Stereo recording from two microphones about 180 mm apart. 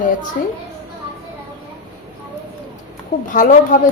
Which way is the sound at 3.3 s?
45° left (ahead or behind).